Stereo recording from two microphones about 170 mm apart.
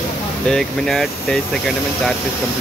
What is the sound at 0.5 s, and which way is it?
Speech, 5° left (ahead or behind).